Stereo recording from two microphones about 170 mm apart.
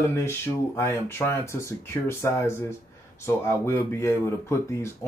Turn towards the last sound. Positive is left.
turn(degrees=15)  # may be behind; listen again after turning